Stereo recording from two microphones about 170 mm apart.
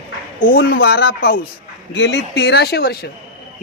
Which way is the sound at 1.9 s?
90° left.